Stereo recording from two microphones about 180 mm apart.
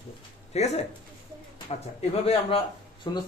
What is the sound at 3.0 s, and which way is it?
Speech, 25° left (ahead or behind).